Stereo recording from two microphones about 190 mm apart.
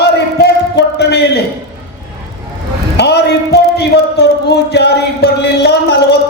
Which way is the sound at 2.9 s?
60° left (ahead or behind).